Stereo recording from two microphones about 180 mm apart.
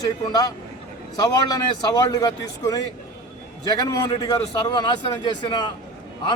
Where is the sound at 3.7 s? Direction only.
20° left (ahead or behind).